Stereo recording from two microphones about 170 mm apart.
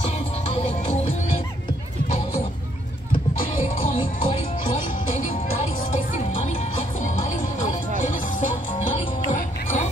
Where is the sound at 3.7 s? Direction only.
30° left (ahead or behind).